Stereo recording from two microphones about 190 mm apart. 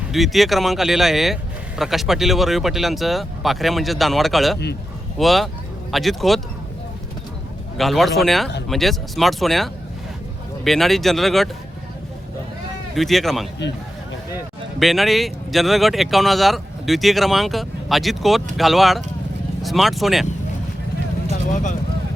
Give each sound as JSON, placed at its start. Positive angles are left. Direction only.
{"t": 0.1, "sound": "speech", "side_deg": 0}
{"t": 7.8, "sound": "speech", "side_deg": 0}
{"t": 13.0, "sound": "speech", "side_deg": 0}
{"t": 14.8, "sound": "speech", "side_deg": 0}
{"t": 21.2, "sound": "vehicle", "side_deg": 40}